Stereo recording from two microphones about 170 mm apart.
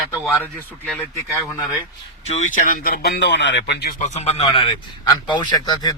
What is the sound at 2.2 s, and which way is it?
Speech, 40° left (ahead or behind).